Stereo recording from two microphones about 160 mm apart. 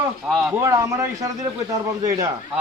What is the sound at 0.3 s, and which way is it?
A man's voice, 10° right (ahead or behind).